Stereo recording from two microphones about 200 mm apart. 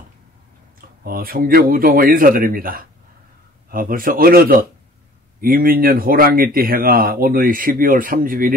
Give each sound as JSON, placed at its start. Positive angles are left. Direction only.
{"t": 0.7, "sound": "speech", "side_deg": -45}